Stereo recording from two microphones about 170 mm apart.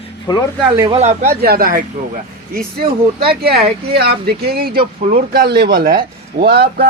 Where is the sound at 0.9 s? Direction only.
40° right (ahead or behind).